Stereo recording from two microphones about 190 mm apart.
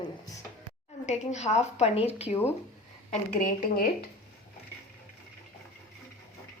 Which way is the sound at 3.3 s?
50° left (ahead or behind).